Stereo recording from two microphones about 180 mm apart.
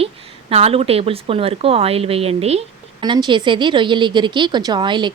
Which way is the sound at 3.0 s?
25° right (ahead or behind).